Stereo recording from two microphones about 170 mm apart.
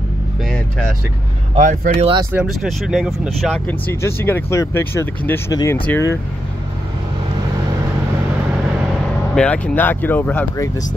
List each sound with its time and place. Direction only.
0.5 s vehicle: 5° left (ahead or behind)
1.6 s speech: 50° right (ahead or behind)
2.0 s speech: 30° right (ahead or behind)
2.3 s speech: centre (ahead or behind); by 6.1 s 15° left (ahead or behind)
9.3 s speech: 5° left (ahead or behind)